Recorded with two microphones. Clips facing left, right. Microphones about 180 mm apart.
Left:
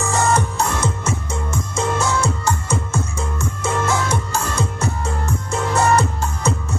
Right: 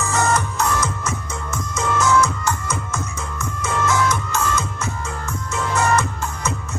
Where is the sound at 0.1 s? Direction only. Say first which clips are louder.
Left 2 dB; 30° left (ahead or behind).